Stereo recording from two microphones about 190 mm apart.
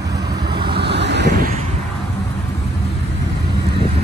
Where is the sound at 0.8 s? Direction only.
65° right (ahead or behind).